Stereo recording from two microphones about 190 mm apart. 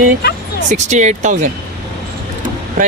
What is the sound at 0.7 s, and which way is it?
Speech, 40° right (ahead or behind).